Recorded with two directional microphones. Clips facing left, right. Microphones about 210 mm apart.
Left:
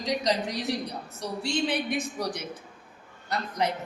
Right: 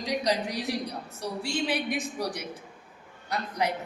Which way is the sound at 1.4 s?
10° right (ahead or behind).